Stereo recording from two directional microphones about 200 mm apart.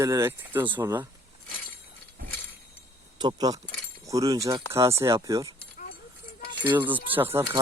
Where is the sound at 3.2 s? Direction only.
20° right (ahead or behind).